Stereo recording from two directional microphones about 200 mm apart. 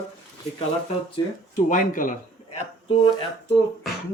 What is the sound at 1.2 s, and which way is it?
Speech, 20° left (ahead or behind).